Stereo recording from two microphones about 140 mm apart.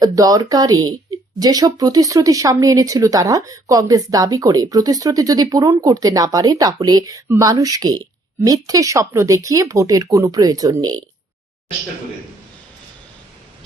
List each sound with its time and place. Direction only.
0.0 s speech: 25° right (ahead or behind)